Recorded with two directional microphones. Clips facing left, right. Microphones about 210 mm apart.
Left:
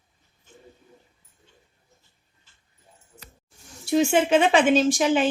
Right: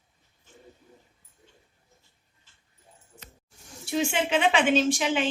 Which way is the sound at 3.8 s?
45° left (ahead or behind).